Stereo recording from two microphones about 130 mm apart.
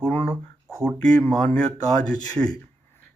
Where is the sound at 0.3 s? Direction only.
20° right (ahead or behind).